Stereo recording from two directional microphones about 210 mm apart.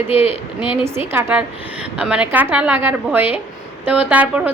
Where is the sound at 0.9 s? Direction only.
10° right (ahead or behind).